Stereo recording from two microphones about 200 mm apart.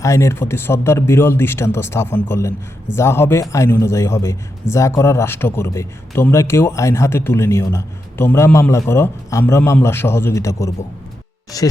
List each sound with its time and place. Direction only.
0.0 s speech: 15° left (ahead or behind)